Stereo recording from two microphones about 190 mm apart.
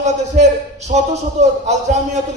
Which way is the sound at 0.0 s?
40° right (ahead or behind).